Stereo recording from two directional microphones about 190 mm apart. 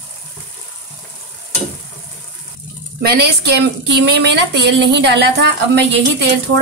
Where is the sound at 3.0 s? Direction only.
60° right (ahead or behind).